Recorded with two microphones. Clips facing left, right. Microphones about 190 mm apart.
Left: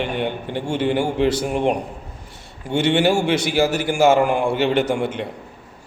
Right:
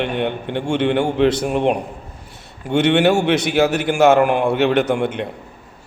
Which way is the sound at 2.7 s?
65° right (ahead or behind).